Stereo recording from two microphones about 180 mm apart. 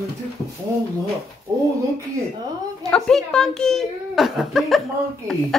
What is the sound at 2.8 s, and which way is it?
Speech, 5° left (ahead or behind).